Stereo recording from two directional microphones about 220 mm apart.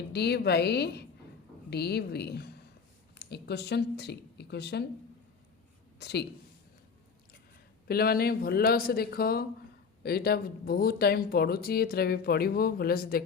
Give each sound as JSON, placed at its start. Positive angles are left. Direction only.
{"t": 0.1, "sound": "speech", "side_deg": 50}
{"t": 6.0, "sound": "speech", "side_deg": 50}
{"t": 7.9, "sound": "speech", "side_deg": 45}